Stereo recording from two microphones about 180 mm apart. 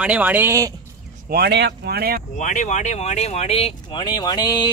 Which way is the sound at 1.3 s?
65° right (ahead or behind).